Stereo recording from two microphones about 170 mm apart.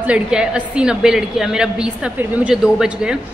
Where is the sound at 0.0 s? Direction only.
5° right (ahead or behind).